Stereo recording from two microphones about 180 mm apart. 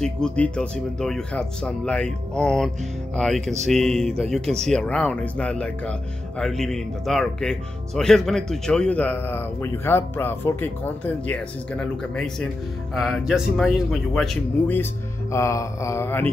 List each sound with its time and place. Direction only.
0.0 s speech: 5° left (ahead or behind)
15.3 s mantra: 15° left (ahead or behind)